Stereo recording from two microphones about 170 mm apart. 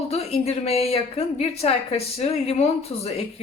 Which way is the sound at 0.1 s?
35° left (ahead or behind).